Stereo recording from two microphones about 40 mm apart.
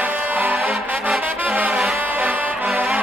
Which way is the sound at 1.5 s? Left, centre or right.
Right.